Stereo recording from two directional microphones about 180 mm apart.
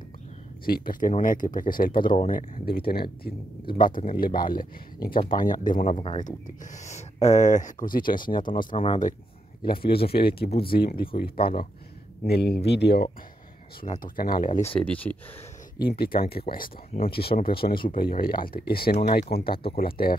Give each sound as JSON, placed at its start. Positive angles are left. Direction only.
{"t": 0.7, "sound": "speech", "side_deg": 55}
{"t": 5.9, "sound": "speech", "side_deg": 30}
{"t": 6.2, "sound": "speech", "side_deg": 45}
{"t": 8.2, "sound": "speech", "side_deg": 25}
{"t": 9.7, "sound": "speech", "side_deg": 60}
{"t": 13.7, "sound": "speech", "side_deg": 50}
{"t": 14.8, "sound": "speech", "side_deg": 10}
{"t": 15.8, "sound": "speech", "side_deg": 60}